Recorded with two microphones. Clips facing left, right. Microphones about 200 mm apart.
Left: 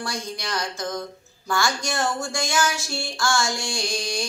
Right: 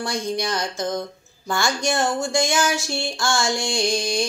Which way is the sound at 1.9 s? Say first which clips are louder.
Right 4 dB; 25° right (ahead or behind).